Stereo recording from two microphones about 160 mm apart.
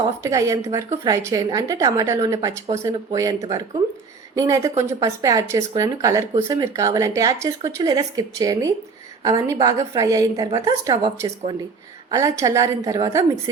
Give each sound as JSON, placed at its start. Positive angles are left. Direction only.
{"t": 0.2, "sound": "speech", "side_deg": -20}